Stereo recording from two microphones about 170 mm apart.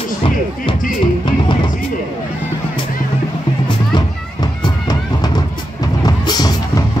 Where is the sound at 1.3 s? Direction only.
30° left (ahead or behind).